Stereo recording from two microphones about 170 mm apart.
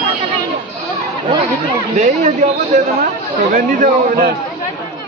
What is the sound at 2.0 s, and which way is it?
Speech, 40° right (ahead or behind).